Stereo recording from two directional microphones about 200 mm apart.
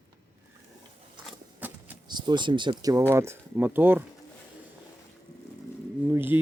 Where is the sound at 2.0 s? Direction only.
20° right (ahead or behind).